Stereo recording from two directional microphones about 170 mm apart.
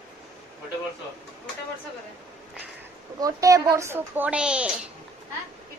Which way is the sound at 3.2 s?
20° right (ahead or behind).